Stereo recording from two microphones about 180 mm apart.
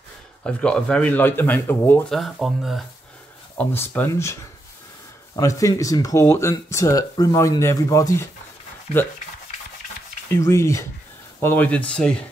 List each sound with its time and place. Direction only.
0.4 s speech: 5° left (ahead or behind)
3.5 s speech: 10° left (ahead or behind)
10.3 s speech: 15° left (ahead or behind)